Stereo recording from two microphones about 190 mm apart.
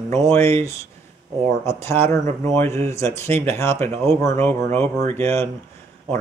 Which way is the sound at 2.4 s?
15° left (ahead or behind).